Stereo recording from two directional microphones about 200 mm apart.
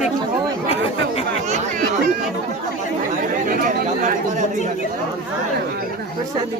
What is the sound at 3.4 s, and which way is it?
Speech, 40° right (ahead or behind).